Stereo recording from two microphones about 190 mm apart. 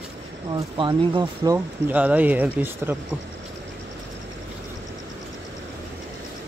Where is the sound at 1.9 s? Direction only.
5° right (ahead or behind).